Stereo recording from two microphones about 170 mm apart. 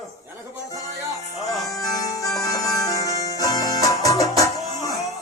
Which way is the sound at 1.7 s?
20° left (ahead or behind).